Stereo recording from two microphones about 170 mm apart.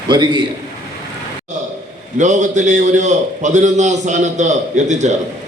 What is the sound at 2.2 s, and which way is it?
A man's voice, 45° right (ahead or behind).